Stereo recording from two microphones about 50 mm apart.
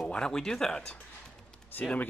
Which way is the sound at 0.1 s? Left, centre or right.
Centre.